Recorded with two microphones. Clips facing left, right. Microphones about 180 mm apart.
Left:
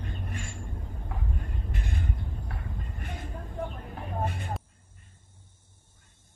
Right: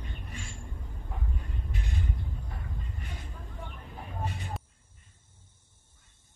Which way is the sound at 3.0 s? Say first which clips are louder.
Left 5 dB; 55° left (ahead or behind).